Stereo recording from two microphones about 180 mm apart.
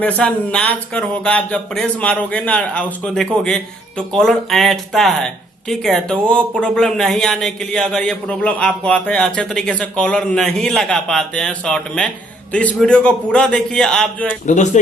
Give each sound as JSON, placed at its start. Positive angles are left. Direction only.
{"t": 0.0, "sound": "speech", "side_deg": 5}
{"t": 14.4, "sound": "speech", "side_deg": 40}